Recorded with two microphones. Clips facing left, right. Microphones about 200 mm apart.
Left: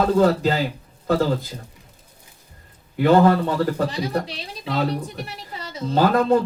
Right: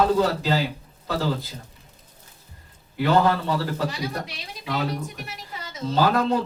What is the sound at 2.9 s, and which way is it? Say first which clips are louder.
Speech: left 5 dB; 50° left (ahead or behind).